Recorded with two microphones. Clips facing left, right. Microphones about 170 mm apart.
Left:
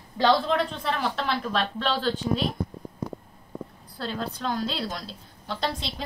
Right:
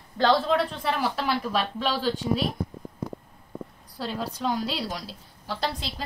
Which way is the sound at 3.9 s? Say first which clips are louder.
Even; 10° right (ahead or behind).